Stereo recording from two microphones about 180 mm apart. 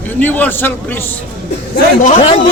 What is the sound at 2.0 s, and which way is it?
Speech, 35° left (ahead or behind).